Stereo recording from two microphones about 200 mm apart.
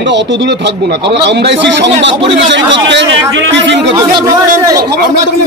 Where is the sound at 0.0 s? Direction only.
60° right (ahead or behind).